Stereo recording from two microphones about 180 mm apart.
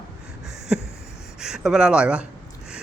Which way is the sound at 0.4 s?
5° right (ahead or behind).